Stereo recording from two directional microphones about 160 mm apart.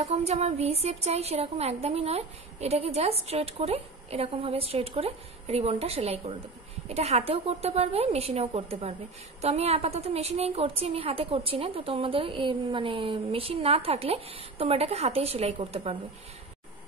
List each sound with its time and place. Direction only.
0.1 s a woman's voice: 40° right (ahead or behind)